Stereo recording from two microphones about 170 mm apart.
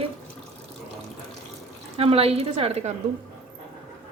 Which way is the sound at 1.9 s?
35° right (ahead or behind).